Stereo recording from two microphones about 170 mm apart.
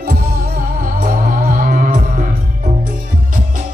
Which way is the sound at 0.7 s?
50° right (ahead or behind).